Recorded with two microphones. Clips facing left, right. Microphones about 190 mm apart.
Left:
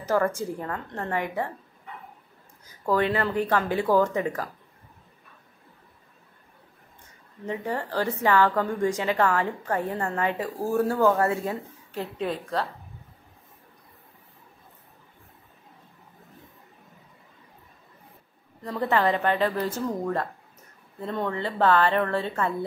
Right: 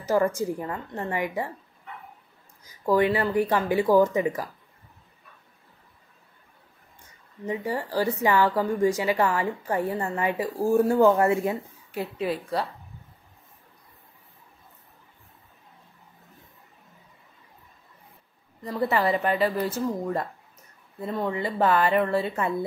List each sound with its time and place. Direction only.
0.0 s a woman's voice: 10° right (ahead or behind)
2.6 s a woman's voice: 10° right (ahead or behind)
7.4 s a woman's voice: 10° right (ahead or behind)
18.6 s a woman's voice: 5° right (ahead or behind)
21.0 s a woman's voice: 5° right (ahead or behind)